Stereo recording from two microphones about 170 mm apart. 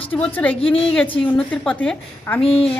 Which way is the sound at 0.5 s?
35° left (ahead or behind).